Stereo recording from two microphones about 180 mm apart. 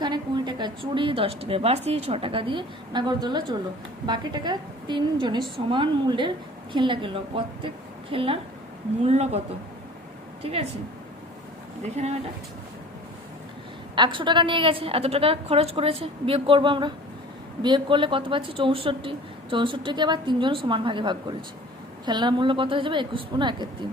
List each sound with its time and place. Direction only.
0.0 s a woman's voice: 25° right (ahead or behind)
10.4 s speech: 35° right (ahead or behind)
11.8 s speech: 40° right (ahead or behind)
13.9 s a woman's voice: 25° right (ahead or behind)